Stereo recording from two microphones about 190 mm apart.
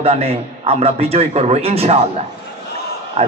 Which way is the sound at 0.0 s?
30° right (ahead or behind).